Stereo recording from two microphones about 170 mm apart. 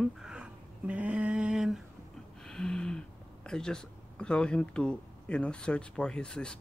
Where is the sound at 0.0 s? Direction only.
5° right (ahead or behind).